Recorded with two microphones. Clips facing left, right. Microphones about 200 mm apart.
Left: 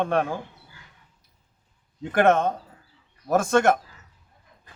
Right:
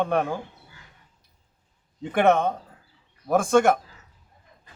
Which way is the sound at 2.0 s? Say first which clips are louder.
Even; centre (ahead or behind).